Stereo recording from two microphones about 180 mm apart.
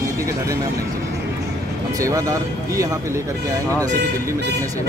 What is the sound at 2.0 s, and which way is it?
Speech, 20° right (ahead or behind).